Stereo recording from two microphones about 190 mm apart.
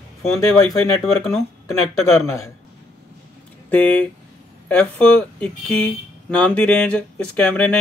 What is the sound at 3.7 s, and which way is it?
Speech, 10° left (ahead or behind).